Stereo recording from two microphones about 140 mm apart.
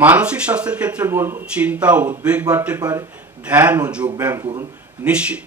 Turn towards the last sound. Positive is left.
turn(degrees=-10)  # may be behind; listen again after turning